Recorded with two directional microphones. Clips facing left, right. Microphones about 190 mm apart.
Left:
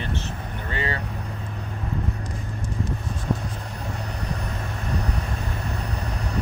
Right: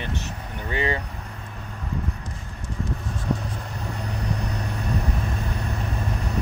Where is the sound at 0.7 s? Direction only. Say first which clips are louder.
Right 4 dB; 15° right (ahead or behind).